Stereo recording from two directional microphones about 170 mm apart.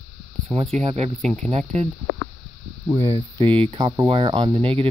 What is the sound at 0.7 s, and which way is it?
Speech, 40° right (ahead or behind).